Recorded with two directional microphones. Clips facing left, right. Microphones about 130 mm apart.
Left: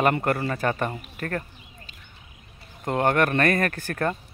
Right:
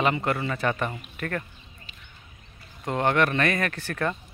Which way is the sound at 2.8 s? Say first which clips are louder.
Left 1 dB; 45° left (ahead or behind).